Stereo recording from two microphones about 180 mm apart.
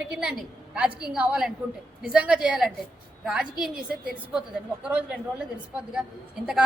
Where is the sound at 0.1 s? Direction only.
5° right (ahead or behind).